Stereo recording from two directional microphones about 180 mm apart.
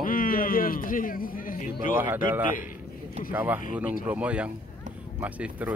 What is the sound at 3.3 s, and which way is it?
Speech, 10° right (ahead or behind).